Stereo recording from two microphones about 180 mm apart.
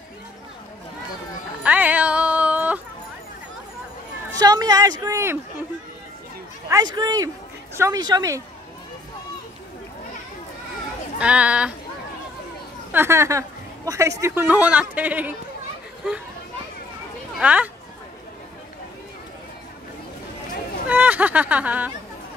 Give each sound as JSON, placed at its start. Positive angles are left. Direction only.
{"t": 1.6, "sound": "music", "side_deg": -10}
{"t": 4.4, "sound": "a man's voice", "side_deg": -20}
{"t": 6.7, "sound": "a man's voice", "side_deg": -20}
{"t": 11.1, "sound": "a woman's voice", "side_deg": -5}
{"t": 12.9, "sound": "a woman's voice", "side_deg": -15}
{"t": 17.4, "sound": "speech", "side_deg": -10}
{"t": 20.9, "sound": "a woman's voice", "side_deg": -10}